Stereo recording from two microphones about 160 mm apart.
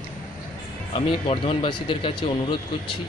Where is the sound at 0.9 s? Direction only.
35° left (ahead or behind).